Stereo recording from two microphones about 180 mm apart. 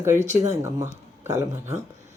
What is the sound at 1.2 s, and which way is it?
Speech, 15° right (ahead or behind).